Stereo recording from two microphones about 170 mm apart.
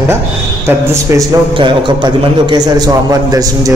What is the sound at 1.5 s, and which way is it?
A man's voice, 30° right (ahead or behind).